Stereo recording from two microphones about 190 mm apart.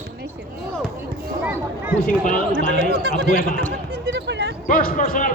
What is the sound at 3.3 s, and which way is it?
Speech, 50° left (ahead or behind).